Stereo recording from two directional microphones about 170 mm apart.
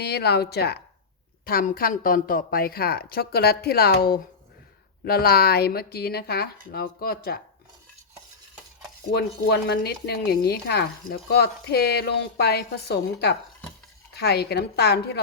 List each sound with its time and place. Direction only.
0.0 s a woman's voice: 75° left (ahead or behind)
9.1 s speech: 70° left (ahead or behind)